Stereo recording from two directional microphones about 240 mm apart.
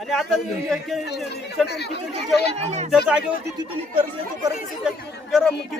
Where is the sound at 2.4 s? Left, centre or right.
Right.